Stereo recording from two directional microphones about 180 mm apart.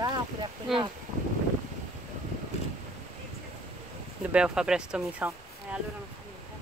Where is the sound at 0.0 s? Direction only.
25° right (ahead or behind).